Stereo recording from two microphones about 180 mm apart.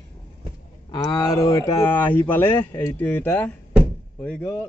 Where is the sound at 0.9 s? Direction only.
25° left (ahead or behind).